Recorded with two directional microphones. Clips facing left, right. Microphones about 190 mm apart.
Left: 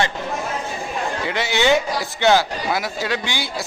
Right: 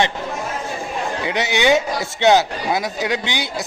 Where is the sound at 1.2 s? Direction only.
20° right (ahead or behind).